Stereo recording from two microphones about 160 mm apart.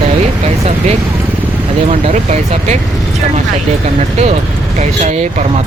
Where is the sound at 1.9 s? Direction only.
40° right (ahead or behind).